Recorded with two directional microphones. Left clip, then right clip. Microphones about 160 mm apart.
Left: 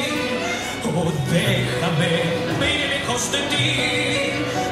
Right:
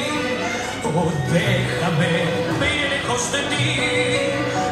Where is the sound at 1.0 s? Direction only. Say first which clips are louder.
Right 1 dB; 60° left (ahead or behind).